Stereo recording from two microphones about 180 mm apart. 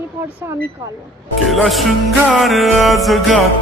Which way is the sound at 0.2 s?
15° right (ahead or behind).